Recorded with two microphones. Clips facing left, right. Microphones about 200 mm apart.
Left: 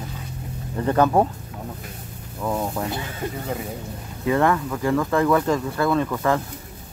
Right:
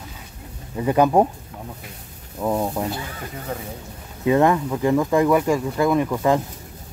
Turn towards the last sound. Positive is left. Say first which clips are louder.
# right 2 dB
turn(degrees=-15)  # may be behind; listen again after turning